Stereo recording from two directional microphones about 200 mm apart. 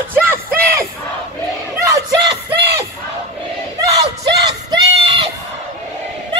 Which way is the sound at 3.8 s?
20° right (ahead or behind).